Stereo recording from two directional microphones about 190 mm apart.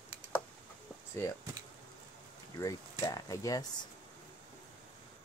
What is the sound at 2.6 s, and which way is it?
Speech, 20° left (ahead or behind).